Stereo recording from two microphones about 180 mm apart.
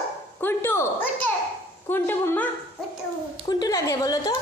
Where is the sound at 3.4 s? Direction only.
20° left (ahead or behind).